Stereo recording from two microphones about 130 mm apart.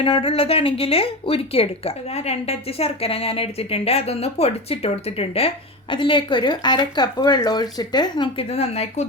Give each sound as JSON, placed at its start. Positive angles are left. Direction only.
{"t": 0.0, "sound": "speech", "side_deg": 45}
{"t": 8.4, "sound": "speech", "side_deg": 55}